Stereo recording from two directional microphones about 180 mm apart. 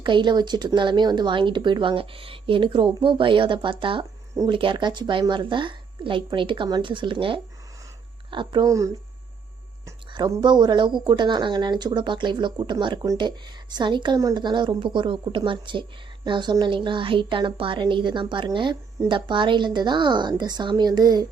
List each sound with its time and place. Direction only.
0.0 s speech: 25° right (ahead or behind)